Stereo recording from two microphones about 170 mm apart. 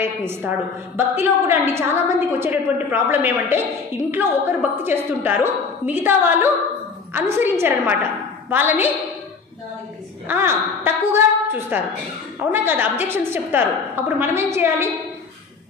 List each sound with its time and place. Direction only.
0.0 s a woman's voice: 15° right (ahead or behind)
10.2 s a woman's voice: 10° right (ahead or behind)